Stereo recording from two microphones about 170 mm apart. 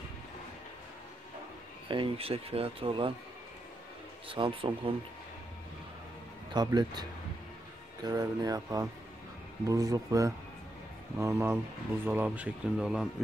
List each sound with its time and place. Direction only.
1.9 s speech: 30° right (ahead or behind)
4.3 s speech: 30° right (ahead or behind)
6.5 s speech: 25° right (ahead or behind); by 13.1 s 5° right (ahead or behind)